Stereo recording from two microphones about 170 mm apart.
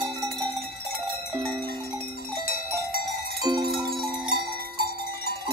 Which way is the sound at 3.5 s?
20° right (ahead or behind).